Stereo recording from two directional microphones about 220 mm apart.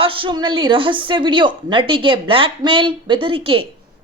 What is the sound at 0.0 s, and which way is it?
Speech, 25° right (ahead or behind).